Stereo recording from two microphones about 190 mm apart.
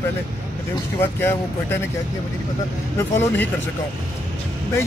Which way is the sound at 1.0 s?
10° left (ahead or behind).